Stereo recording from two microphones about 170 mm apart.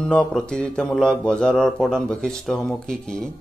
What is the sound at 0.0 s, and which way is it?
Speech, 5° left (ahead or behind).